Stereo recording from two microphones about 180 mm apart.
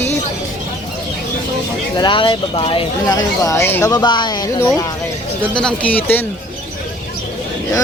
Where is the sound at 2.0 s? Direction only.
25° left (ahead or behind).